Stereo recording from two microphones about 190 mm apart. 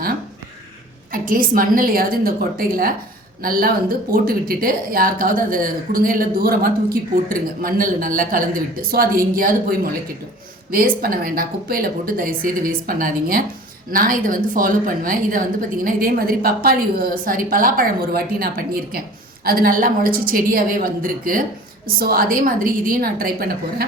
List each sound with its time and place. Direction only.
1.1 s speech: 45° right (ahead or behind)